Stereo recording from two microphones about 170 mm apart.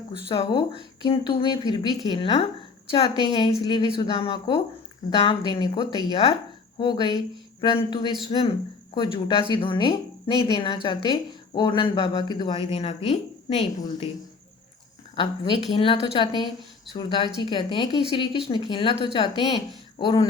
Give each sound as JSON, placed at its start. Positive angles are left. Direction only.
{"t": 0.3, "sound": "speech", "side_deg": 30}
{"t": 5.8, "sound": "speech", "side_deg": -30}
{"t": 6.1, "sound": "speech", "side_deg": 35}
{"t": 15.1, "sound": "a woman's voice", "side_deg": 30}